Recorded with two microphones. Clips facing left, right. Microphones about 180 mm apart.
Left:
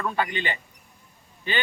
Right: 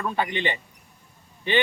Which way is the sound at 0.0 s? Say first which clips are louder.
Right 1 dB; 20° right (ahead or behind).